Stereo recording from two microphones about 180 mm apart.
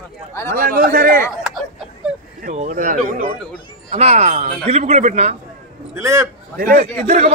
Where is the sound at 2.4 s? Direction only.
40° right (ahead or behind).